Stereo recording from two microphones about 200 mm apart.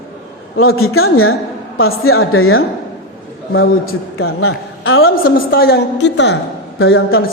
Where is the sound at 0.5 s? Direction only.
90° left.